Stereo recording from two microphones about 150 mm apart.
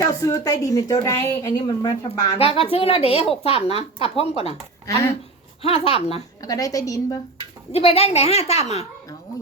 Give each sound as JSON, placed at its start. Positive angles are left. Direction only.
{"t": 0.0, "sound": "a woman's voice", "side_deg": 20}
{"t": 2.0, "sound": "a woman's voice", "side_deg": 40}
{"t": 4.9, "sound": "a woman's voice", "side_deg": 20}
{"t": 5.6, "sound": "a woman's voice", "side_deg": 40}
{"t": 6.4, "sound": "a woman's voice", "side_deg": 25}
{"t": 7.7, "sound": "a child's voice", "side_deg": 40}